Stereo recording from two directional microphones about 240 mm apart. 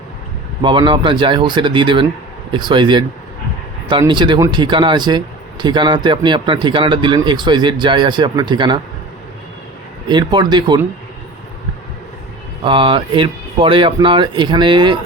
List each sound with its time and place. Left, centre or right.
0.6 s a man's voice: centre
10.1 s a man's voice: centre
12.6 s a man's voice: right